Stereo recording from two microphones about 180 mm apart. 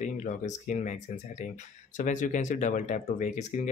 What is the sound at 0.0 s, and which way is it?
Speech, 45° left (ahead or behind).